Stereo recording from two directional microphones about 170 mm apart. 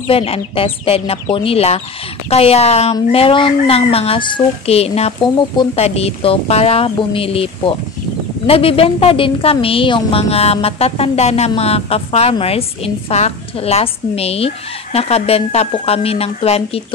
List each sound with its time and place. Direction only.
0.0 s a woman's voice: 35° left (ahead or behind)